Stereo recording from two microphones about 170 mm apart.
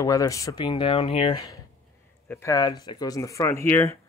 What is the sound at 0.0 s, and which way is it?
Speech, 20° left (ahead or behind).